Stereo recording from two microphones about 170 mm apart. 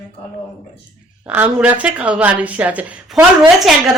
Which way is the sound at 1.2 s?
10° right (ahead or behind).